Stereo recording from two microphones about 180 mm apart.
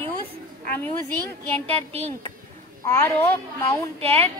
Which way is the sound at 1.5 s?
35° right (ahead or behind).